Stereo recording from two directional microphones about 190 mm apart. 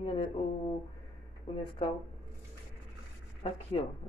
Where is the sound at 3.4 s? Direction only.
30° left (ahead or behind).